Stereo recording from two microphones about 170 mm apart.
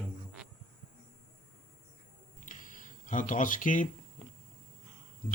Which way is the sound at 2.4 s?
50° left (ahead or behind).